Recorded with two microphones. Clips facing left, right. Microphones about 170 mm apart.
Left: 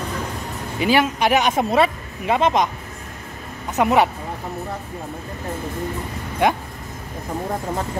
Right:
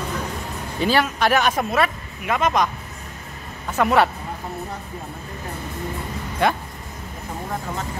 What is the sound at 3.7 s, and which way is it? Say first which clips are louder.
Speech: left 1 dB; 20° left (ahead or behind).